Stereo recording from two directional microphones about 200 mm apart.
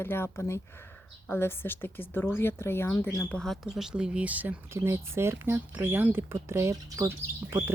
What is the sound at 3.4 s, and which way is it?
Speech, centre (ahead or behind).